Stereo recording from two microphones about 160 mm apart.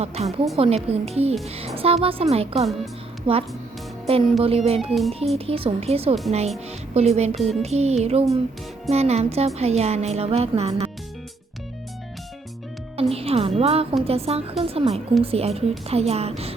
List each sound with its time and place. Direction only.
0.0 s music: 40° right (ahead or behind)
4.9 s speech: centre (ahead or behind)
5.5 s music: 35° right (ahead or behind)
13.0 s a woman's voice: 40° right (ahead or behind)
14.0 s music: 40° right (ahead or behind)